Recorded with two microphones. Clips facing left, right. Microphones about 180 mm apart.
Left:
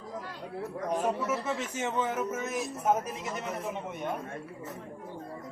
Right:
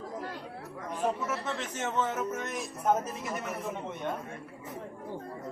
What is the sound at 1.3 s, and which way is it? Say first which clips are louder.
Speech: left 3 dB; 10° left (ahead or behind).